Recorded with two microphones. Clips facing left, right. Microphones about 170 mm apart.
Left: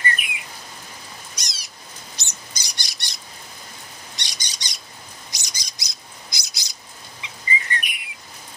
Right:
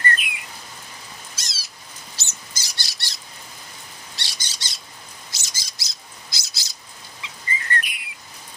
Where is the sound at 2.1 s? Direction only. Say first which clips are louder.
Left 1 dB; 15° left (ahead or behind).